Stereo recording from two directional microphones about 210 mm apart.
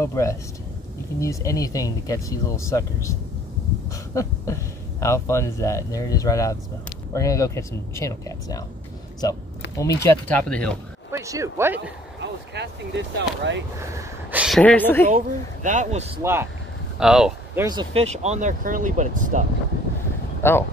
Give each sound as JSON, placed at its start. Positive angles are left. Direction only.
{"t": 0.0, "sound": "speech", "side_deg": 15}
{"t": 3.9, "sound": "a sound", "side_deg": 15}
{"t": 5.0, "sound": "speech", "side_deg": 15}
{"t": 9.8, "sound": "speech", "side_deg": 15}
{"t": 11.1, "sound": "speech", "side_deg": -15}
{"t": 12.2, "sound": "speech", "side_deg": -55}
{"t": 13.7, "sound": "speech", "side_deg": -10}
{"t": 14.6, "sound": "speech", "side_deg": 5}
{"t": 15.0, "sound": "speech", "side_deg": -40}
{"t": 16.2, "sound": "speech", "side_deg": -10}
{"t": 17.6, "sound": "speech", "side_deg": -25}
{"t": 20.4, "sound": "speech", "side_deg": 10}